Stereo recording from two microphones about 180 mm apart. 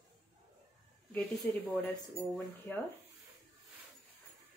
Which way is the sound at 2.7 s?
10° left (ahead or behind).